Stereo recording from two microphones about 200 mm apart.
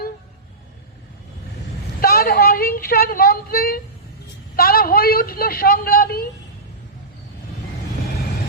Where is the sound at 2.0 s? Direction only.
50° left (ahead or behind).